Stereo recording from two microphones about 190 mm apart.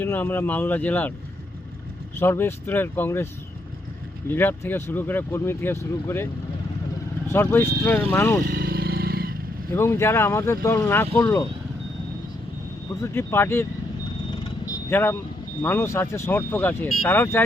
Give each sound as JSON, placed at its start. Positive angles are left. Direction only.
{"t": 0.0, "sound": "speech", "side_deg": 10}
{"t": 2.1, "sound": "speech", "side_deg": 10}
{"t": 4.3, "sound": "speech", "side_deg": 10}
{"t": 7.3, "sound": "speech", "side_deg": 15}
{"t": 8.4, "sound": "motorcycle", "side_deg": -55}
{"t": 9.7, "sound": "speech", "side_deg": 15}
{"t": 13.0, "sound": "speech", "side_deg": 10}
{"t": 14.6, "sound": "vehicle", "side_deg": 10}
{"t": 15.6, "sound": "speech", "side_deg": 10}